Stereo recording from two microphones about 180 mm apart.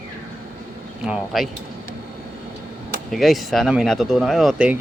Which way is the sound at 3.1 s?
Centre (ahead or behind).